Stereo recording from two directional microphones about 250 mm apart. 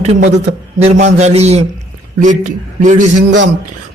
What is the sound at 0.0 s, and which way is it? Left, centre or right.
A man's voice, right.